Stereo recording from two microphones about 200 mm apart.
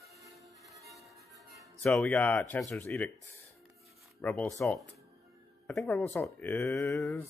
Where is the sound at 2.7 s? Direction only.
10° left (ahead or behind).